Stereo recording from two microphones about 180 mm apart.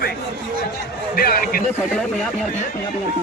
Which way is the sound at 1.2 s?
55° left (ahead or behind).